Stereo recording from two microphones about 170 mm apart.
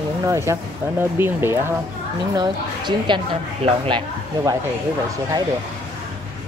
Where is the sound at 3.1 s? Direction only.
30° right (ahead or behind).